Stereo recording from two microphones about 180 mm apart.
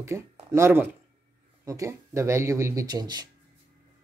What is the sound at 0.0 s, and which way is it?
Speech, 15° right (ahead or behind).